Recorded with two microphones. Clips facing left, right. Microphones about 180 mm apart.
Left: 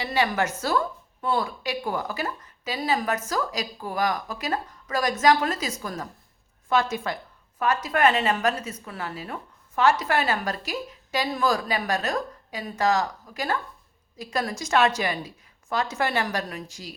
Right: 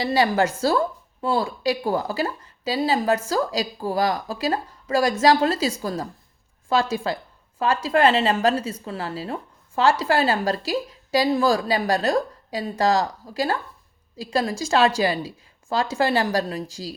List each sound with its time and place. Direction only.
0.0 s a woman's voice: 35° right (ahead or behind)